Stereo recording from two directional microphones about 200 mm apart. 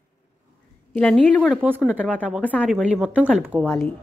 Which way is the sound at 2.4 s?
5° left (ahead or behind).